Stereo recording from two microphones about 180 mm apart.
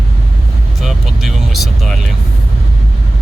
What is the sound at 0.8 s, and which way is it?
Vehicle, centre (ahead or behind).